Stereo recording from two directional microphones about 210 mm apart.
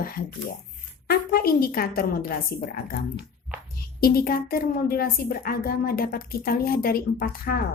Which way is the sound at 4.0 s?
45° left (ahead or behind).